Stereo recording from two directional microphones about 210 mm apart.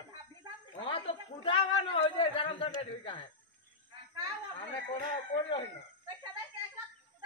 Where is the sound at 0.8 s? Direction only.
25° left (ahead or behind).